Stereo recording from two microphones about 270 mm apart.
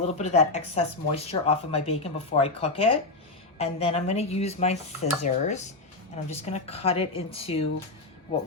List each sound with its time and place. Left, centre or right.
0.0 s speech: left